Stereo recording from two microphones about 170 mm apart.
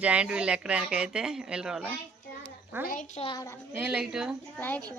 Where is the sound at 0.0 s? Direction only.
5° right (ahead or behind).